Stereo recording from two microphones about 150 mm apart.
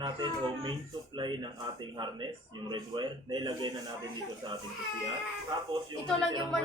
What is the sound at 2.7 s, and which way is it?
A man's voice, 30° right (ahead or behind).